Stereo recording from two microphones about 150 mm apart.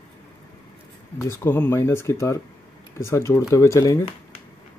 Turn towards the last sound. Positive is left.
turn(degrees=20)  # may be behind; listen again after turning